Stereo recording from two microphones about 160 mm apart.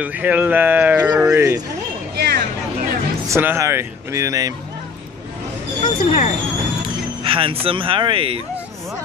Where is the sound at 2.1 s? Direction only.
90° right.